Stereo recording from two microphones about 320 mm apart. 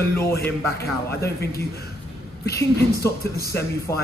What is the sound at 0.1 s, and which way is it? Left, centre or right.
Speech, centre.